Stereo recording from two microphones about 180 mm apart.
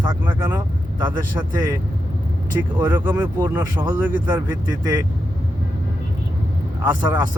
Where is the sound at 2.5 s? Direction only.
10° right (ahead or behind).